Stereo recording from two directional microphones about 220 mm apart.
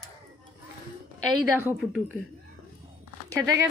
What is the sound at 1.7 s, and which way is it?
Speech, centre (ahead or behind).